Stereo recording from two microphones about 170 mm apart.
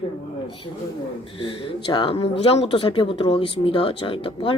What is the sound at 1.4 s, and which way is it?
Speech, 30° left (ahead or behind).